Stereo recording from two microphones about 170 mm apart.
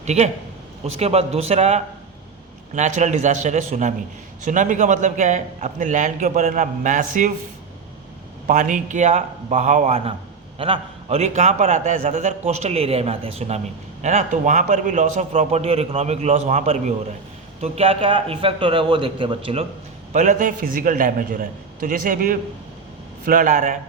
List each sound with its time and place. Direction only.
0.0 s a man's voice: 40° right (ahead or behind)
8.4 s a man's voice: 50° right (ahead or behind); by 19.6 s 30° right (ahead or behind)
20.1 s a man's voice: 50° right (ahead or behind)